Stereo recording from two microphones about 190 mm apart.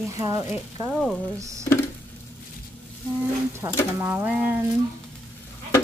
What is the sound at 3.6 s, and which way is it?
Speech, 20° right (ahead or behind).